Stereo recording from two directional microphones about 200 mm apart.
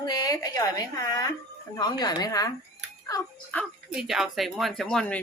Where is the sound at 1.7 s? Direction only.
20° left (ahead or behind).